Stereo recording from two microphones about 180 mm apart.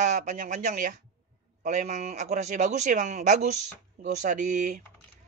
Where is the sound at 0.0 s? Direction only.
40° right (ahead or behind).